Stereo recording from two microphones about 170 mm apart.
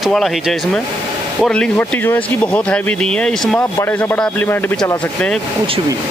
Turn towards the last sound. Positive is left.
turn(degrees=5)  # may be behind; listen again after turning